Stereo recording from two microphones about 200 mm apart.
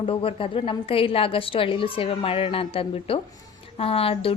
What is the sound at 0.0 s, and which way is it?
Speech, 25° left (ahead or behind).